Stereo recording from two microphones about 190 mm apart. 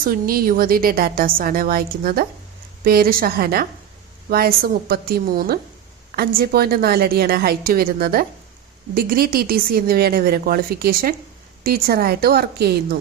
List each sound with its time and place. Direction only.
0.0 s a woman's voice: 50° right (ahead or behind)